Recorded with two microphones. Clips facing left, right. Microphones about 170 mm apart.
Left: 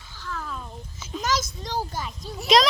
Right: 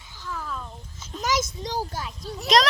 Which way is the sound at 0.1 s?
15° right (ahead or behind).